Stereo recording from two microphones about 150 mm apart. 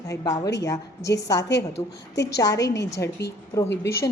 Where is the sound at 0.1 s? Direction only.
20° left (ahead or behind).